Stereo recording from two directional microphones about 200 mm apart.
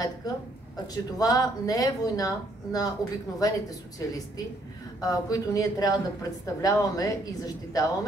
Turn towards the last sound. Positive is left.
turn(degrees=15)  # may be behind; listen again after turning